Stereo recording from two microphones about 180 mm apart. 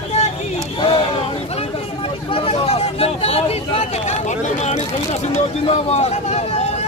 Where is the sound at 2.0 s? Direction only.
30° left (ahead or behind).